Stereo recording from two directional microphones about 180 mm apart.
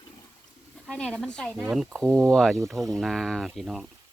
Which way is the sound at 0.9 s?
5° left (ahead or behind).